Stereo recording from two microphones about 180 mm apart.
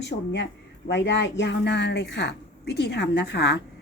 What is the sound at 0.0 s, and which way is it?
Speech, 80° left.